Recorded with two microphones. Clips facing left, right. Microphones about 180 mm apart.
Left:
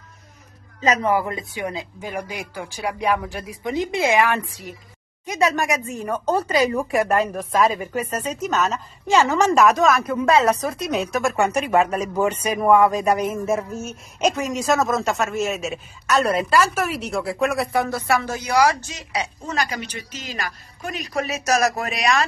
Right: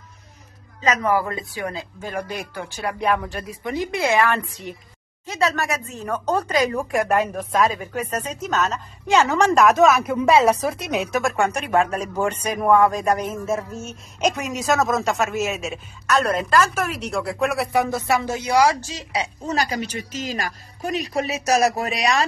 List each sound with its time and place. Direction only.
0.7 s a man's voice: 35° left (ahead or behind)
1.0 s speech: 20° left (ahead or behind)
3.6 s a woman's voice: 20° left (ahead or behind); by 17.6 s centre (ahead or behind)
17.7 s a woman's voice: 20° right (ahead or behind)